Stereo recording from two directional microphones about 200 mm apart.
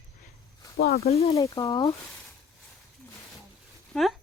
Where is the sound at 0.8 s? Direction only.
50° left (ahead or behind).